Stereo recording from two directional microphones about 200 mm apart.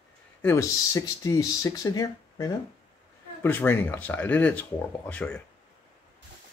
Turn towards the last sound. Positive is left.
turn(degrees=5)  # may be behind; listen again after turning